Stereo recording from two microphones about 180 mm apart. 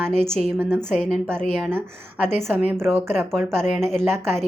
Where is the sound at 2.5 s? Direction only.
10° right (ahead or behind).